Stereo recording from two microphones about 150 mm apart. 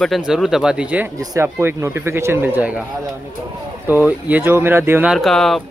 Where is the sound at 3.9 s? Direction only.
10° right (ahead or behind).